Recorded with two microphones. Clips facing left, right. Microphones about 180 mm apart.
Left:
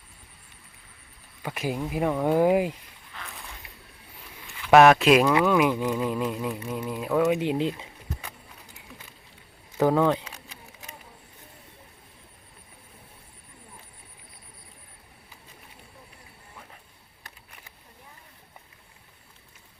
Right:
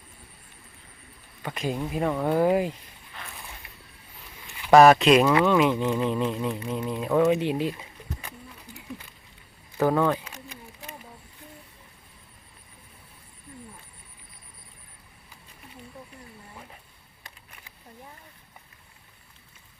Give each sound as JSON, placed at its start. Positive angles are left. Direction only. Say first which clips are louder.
{"t": 1.4, "sound": "speech", "louder": "even", "side_deg": 10}
{"t": 4.4, "sound": "a sound", "louder": "even", "side_deg": -20}
{"t": 4.7, "sound": "speech", "louder": "right 1 dB", "side_deg": 0}
{"t": 7.3, "sound": "speech", "louder": "right 1 dB", "side_deg": 15}
{"t": 9.7, "sound": "speech", "louder": "left 1 dB", "side_deg": 15}